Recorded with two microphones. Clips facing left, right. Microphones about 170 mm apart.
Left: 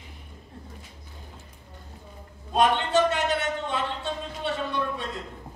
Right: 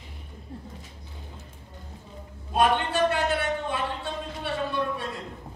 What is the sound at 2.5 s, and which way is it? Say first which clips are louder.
A man's voice: left 2 dB; 20° left (ahead or behind).